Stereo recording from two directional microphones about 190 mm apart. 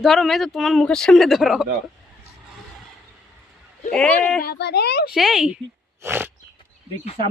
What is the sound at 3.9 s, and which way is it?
Speech, 5° left (ahead or behind).